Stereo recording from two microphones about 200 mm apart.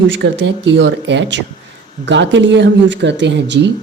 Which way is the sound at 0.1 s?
65° right (ahead or behind).